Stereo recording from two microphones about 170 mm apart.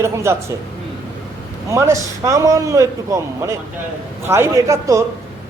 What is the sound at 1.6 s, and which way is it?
A man's voice, 20° right (ahead or behind).